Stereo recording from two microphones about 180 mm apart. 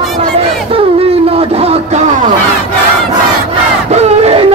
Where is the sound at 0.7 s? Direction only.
35° right (ahead or behind).